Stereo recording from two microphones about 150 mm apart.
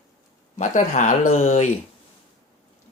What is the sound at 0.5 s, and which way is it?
Speech, 55° left (ahead or behind).